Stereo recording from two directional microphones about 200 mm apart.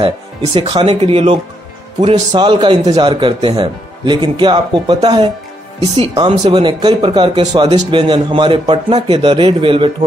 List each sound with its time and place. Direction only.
0.6 s speech: 30° right (ahead or behind)